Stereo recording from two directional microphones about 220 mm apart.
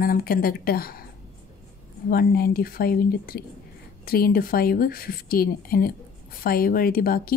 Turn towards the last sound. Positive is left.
turn(degrees=40)  # may be behind; listen again after turning